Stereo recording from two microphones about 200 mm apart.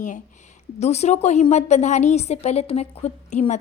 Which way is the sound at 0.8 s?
35° left (ahead or behind).